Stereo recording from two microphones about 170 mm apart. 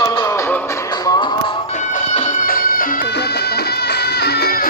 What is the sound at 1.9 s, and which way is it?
Music, 50° left (ahead or behind).